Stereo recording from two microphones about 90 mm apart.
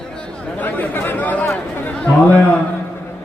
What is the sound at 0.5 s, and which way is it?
Chatter, 20° left (ahead or behind).